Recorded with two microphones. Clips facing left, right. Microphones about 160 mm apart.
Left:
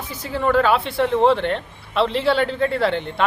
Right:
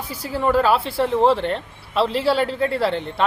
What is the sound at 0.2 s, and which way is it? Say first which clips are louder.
Speech: even; 5° right (ahead or behind).